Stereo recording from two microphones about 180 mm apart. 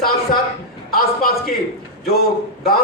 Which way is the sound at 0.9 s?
55° left (ahead or behind).